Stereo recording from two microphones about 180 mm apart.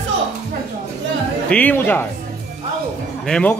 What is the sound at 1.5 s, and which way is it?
Speech, 10° left (ahead or behind).